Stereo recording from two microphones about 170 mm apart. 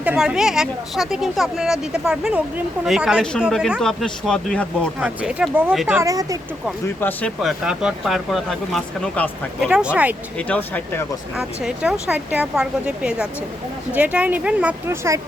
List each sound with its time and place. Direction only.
0.0 s speech: 5° right (ahead or behind)
5.0 s speech: 5° right (ahead or behind)
6.0 s speech: 20° right (ahead or behind)
6.8 s speech: 10° left (ahead or behind)
9.6 s speech: 5° right (ahead or behind)
10.3 s speech: 10° left (ahead or behind)
11.3 s speech: 5° right (ahead or behind)